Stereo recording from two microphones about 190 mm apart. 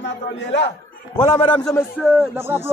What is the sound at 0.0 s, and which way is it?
Speech, 70° left (ahead or behind).